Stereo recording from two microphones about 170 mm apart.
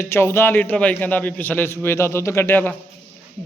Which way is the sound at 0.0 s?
15° left (ahead or behind).